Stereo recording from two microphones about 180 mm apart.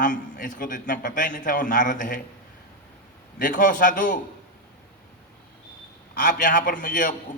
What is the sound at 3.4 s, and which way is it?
Speech, 45° left (ahead or behind).